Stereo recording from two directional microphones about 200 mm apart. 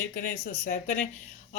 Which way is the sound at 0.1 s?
45° left (ahead or behind).